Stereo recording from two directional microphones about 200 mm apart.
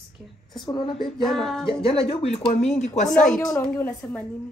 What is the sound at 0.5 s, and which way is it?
Speech, 20° left (ahead or behind).